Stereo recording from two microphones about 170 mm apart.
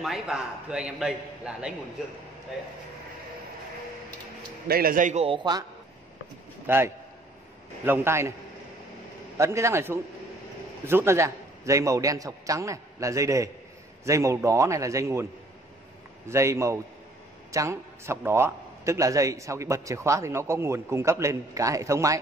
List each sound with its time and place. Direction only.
0.0 s a man's voice: 5° right (ahead or behind)
4.6 s a man's voice: 60° right (ahead or behind)
5.2 s a man's voice: 30° right (ahead or behind)
6.7 s a man's voice: 10° right (ahead or behind)
9.4 s a man's voice: 15° right (ahead or behind)
16.3 s a man's voice: 15° right (ahead or behind)